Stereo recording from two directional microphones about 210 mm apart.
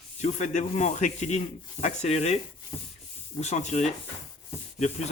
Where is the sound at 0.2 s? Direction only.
35° left (ahead or behind).